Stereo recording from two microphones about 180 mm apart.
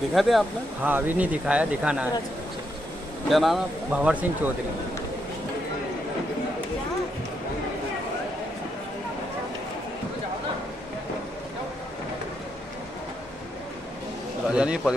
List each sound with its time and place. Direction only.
0.1 s speech: centre (ahead or behind)
3.3 s speech: centre (ahead or behind)
14.5 s speech: 5° right (ahead or behind)